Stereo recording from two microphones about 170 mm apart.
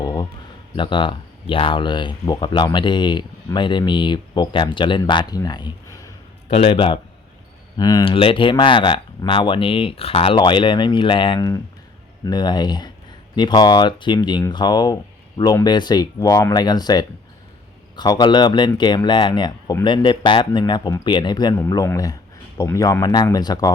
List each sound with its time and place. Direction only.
0.8 s speech: 30° left (ahead or behind)
6.5 s a man's voice: 35° left (ahead or behind)